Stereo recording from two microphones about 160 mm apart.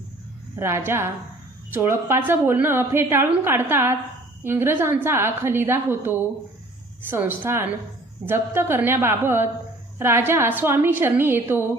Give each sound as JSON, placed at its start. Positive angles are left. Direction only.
{"t": 0.5, "sound": "a woman's voice", "side_deg": -15}